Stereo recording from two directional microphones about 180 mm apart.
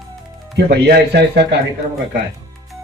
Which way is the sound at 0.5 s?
65° right (ahead or behind).